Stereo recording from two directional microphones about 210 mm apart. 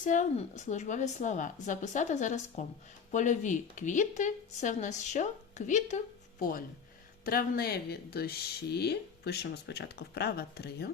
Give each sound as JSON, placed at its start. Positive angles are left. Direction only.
{"t": 0.0, "sound": "speech", "side_deg": 35}
{"t": 7.3, "sound": "speech", "side_deg": 45}